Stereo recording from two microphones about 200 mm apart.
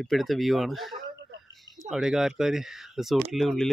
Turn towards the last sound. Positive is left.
turn(degrees=0)  # may be behind; listen again after turning